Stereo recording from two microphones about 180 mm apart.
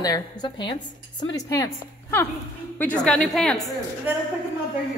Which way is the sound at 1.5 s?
15° left (ahead or behind).